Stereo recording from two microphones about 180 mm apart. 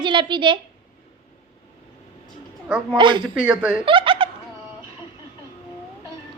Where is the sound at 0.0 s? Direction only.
25° right (ahead or behind).